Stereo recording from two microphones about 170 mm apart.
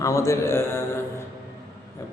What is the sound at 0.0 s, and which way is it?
Mantra, 20° left (ahead or behind).